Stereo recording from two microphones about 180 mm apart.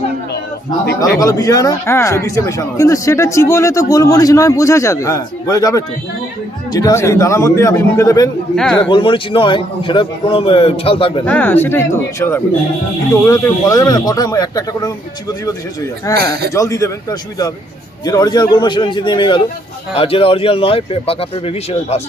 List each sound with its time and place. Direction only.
1.2 s speech: 20° left (ahead or behind)
8.5 s speech: 5° left (ahead or behind)
8.8 s a man's voice: 30° left (ahead or behind)
11.3 s a man's voice: 10° left (ahead or behind); by 22.0 s 35° left (ahead or behind)